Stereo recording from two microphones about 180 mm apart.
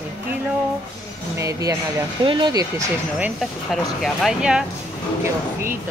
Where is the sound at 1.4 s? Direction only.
20° right (ahead or behind).